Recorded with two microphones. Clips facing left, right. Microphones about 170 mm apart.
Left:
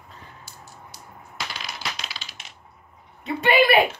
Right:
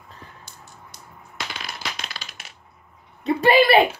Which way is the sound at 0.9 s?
Centre (ahead or behind).